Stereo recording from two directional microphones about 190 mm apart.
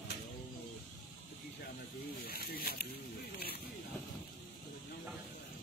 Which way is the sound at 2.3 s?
55° left (ahead or behind).